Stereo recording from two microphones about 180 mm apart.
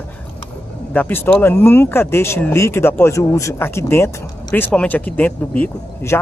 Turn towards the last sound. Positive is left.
turn(degrees=10)  # may be behind; listen again after turning